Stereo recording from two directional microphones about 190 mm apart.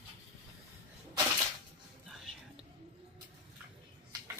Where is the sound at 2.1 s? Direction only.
Centre (ahead or behind).